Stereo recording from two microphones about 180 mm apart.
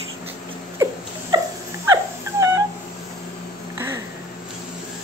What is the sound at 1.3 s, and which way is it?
Dog, 25° right (ahead or behind).